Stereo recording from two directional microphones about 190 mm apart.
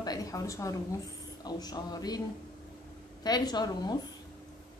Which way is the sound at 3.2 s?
20° left (ahead or behind).